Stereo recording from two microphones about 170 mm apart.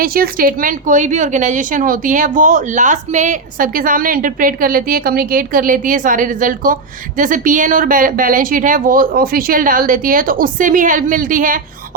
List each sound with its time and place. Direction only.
0.0 s a woman's voice: 60° right (ahead or behind)